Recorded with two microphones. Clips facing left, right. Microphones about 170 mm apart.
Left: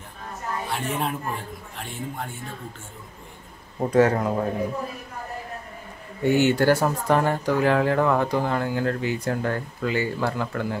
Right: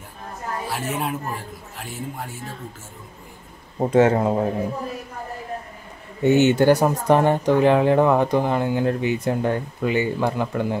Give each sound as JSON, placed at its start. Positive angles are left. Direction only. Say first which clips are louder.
{"t": 0.7, "sound": "speech", "louder": "right 1 dB", "side_deg": -5}
{"t": 3.8, "sound": "speech", "louder": "right 3 dB", "side_deg": -25}
{"t": 6.2, "sound": "speech", "louder": "right 4 dB", "side_deg": -20}